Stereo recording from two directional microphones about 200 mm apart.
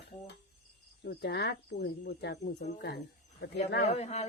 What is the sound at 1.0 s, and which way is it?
A woman's voice, 55° left (ahead or behind).